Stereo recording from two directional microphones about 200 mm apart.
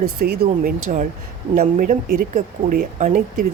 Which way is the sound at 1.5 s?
40° right (ahead or behind).